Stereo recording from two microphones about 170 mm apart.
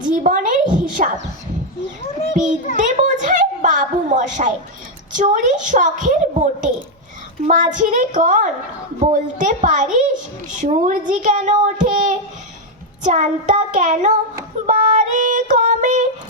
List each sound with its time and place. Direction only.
0.1 s a woman's voice: 50° right (ahead or behind)
2.7 s a sound: 45° right (ahead or behind)
5.1 s a child's voice: 50° right (ahead or behind)
14.7 s music: 45° right (ahead or behind)